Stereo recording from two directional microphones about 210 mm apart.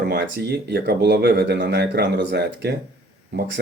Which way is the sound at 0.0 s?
50° right (ahead or behind).